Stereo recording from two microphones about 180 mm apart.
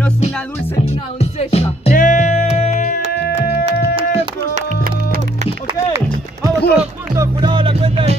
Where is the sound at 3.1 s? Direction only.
65° left (ahead or behind).